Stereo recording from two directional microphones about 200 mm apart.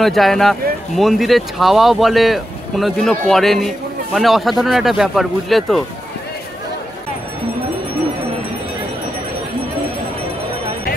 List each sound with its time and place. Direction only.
0.0 s speech: centre (ahead or behind)